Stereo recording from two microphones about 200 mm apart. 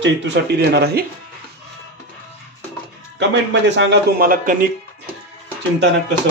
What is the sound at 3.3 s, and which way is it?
A man's voice, 60° right (ahead or behind).